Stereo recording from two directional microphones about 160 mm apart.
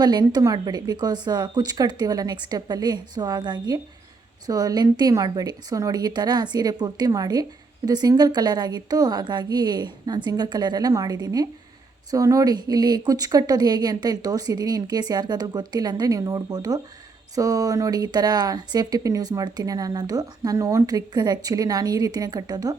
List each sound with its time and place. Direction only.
0.0 s speech: 25° right (ahead or behind)